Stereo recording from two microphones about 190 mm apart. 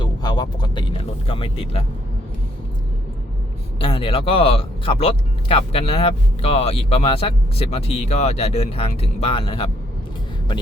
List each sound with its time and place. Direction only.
0.0 s speech: 20° left (ahead or behind)
3.8 s speech: 30° left (ahead or behind)